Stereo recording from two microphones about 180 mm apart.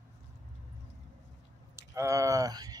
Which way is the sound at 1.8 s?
15° right (ahead or behind).